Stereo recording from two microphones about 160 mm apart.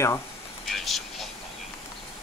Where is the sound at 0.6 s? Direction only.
Centre (ahead or behind).